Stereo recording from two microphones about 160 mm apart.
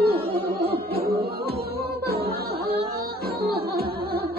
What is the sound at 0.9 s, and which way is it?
Music, 80° right.